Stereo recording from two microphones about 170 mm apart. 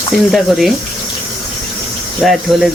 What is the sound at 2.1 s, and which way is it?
Speech, centre (ahead or behind).